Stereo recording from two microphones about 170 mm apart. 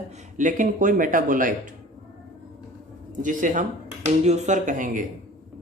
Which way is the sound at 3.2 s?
50° right (ahead or behind).